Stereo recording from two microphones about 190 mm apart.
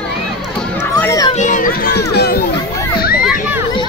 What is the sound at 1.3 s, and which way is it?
Children playing, 40° left (ahead or behind).